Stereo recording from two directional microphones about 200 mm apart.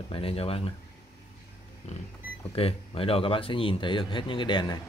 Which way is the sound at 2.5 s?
30° left (ahead or behind).